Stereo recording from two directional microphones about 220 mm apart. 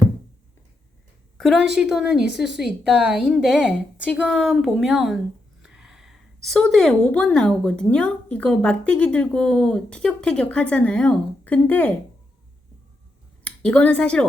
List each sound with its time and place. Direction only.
1.4 s a woman's voice: centre (ahead or behind)
13.4 s speech: 5° left (ahead or behind)